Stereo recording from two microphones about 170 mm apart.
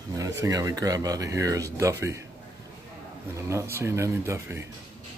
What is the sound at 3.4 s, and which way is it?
Speech, 15° right (ahead or behind).